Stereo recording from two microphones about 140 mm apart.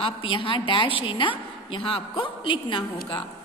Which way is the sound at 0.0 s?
40° left (ahead or behind).